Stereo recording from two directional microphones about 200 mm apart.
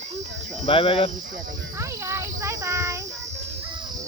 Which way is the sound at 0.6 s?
30° left (ahead or behind).